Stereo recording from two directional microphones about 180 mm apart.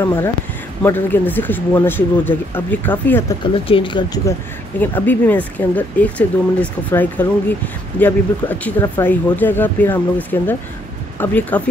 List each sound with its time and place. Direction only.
0.0 s speech: 15° left (ahead or behind)
3.5 s speech: 30° left (ahead or behind)
4.7 s speech: 10° left (ahead or behind)